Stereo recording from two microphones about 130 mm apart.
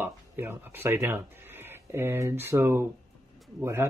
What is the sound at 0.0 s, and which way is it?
Speech, 15° right (ahead or behind).